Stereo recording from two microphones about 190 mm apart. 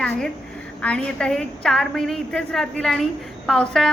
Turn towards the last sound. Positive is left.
turn(degrees=5)  # may be behind; listen again after turning